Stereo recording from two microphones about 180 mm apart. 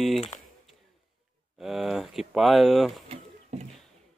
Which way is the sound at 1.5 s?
Centre (ahead or behind).